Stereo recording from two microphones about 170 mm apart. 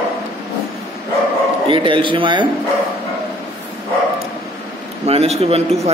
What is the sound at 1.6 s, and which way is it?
Speech, 30° right (ahead or behind).